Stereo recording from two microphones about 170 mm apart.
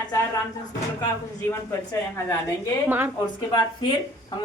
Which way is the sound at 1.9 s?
15° left (ahead or behind).